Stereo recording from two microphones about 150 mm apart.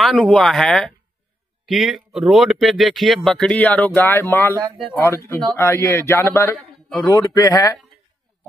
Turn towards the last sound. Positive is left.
turn(degrees=20)  # may be behind; listen again after turning